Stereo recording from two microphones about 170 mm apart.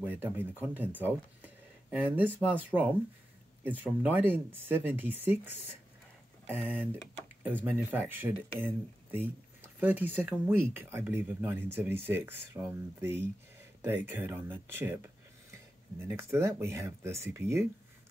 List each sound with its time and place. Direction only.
0.0 s speech: 10° right (ahead or behind)